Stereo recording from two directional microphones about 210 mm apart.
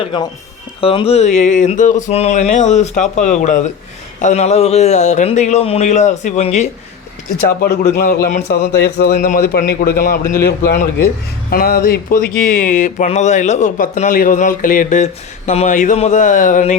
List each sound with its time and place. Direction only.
0.0 s speech: 25° left (ahead or behind)
7.6 s a man's voice: 50° left (ahead or behind)